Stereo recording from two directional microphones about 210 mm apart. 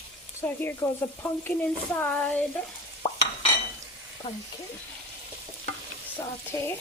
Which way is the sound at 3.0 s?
20° left (ahead or behind).